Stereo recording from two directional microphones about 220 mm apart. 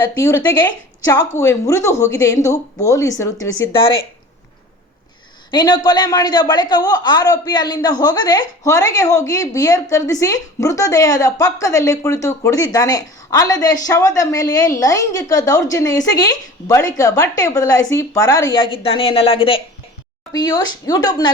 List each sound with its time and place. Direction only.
0.2 s a woman's voice: 15° left (ahead or behind)
5.5 s a woman's voice: 20° left (ahead or behind)